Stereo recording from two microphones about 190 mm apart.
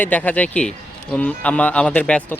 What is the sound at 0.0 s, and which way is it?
Speech, 10° left (ahead or behind).